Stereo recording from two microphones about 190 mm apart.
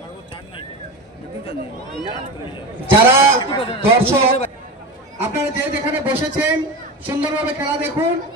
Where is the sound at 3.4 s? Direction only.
25° left (ahead or behind).